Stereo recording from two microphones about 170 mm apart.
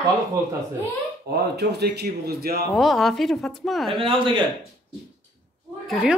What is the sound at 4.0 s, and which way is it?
Speech, 30° right (ahead or behind).